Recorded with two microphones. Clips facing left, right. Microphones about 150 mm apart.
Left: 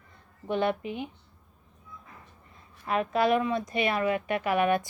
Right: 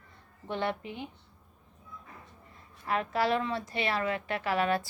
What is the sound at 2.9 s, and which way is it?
Speech, 20° left (ahead or behind).